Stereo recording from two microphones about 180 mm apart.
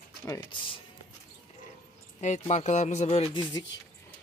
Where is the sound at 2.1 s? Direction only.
40° left (ahead or behind).